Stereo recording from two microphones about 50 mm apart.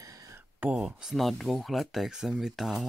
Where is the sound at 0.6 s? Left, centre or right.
Right.